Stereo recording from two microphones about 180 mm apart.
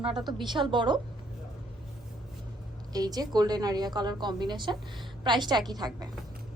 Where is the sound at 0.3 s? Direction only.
25° right (ahead or behind).